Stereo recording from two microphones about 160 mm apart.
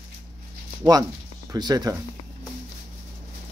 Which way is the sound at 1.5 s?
25° right (ahead or behind).